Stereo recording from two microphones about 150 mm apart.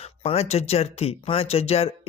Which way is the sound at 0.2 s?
45° left (ahead or behind).